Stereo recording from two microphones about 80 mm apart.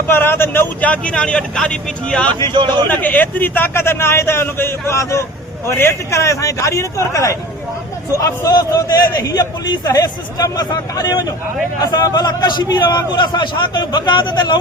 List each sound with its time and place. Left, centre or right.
0.1 s speech: left
0.8 s speech: centre
2.4 s speech: right
2.9 s a man's voice: left